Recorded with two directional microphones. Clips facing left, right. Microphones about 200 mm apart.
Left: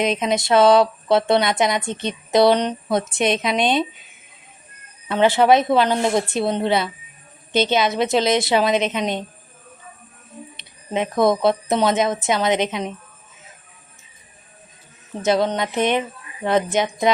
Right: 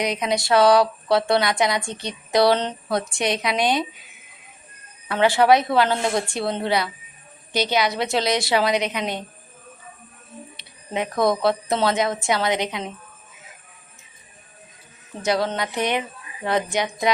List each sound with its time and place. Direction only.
0.0 s speech: 25° left (ahead or behind)
5.0 s speech: 20° left (ahead or behind)
10.6 s a sound: 20° left (ahead or behind)
11.2 s speech: 20° left (ahead or behind)
15.2 s speech: 20° left (ahead or behind)